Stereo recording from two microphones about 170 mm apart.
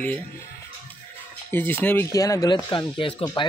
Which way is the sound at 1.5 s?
10° left (ahead or behind).